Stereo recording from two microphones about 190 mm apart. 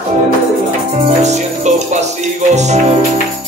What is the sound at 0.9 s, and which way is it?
A man's voice, 35° right (ahead or behind).